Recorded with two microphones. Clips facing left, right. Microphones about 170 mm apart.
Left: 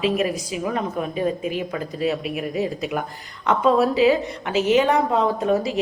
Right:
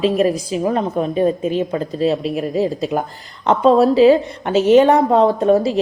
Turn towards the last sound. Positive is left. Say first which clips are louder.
# right 6 dB
turn(degrees=-35)  # may be behind; listen again after turning